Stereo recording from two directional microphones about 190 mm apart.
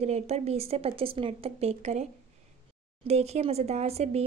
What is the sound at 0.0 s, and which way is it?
Speech, 35° right (ahead or behind).